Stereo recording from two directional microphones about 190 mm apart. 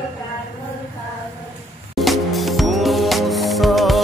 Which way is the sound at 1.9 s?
Centre (ahead or behind).